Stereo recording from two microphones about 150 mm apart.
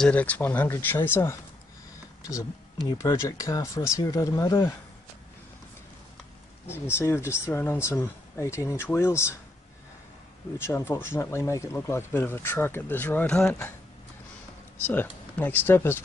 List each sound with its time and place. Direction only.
0.0 s speech: 10° left (ahead or behind)
2.9 s speech: 20° left (ahead or behind)
6.7 s speech: 15° left (ahead or behind)
10.6 s speech: 15° left (ahead or behind)
14.9 s speech: 10° left (ahead or behind)